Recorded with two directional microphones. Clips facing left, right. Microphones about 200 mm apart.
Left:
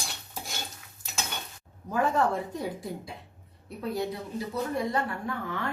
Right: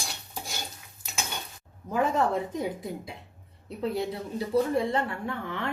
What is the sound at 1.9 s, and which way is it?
Speech, 20° right (ahead or behind).